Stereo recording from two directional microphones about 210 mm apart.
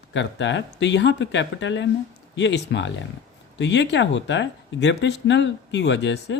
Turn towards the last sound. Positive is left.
turn(degrees=60)  # may be behind; listen again after turning